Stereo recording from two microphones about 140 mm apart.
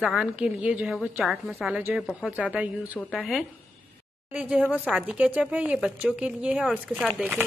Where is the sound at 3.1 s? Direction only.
Centre (ahead or behind).